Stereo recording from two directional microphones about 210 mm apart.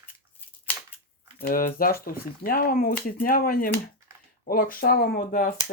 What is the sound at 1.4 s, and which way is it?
Speech, 45° left (ahead or behind).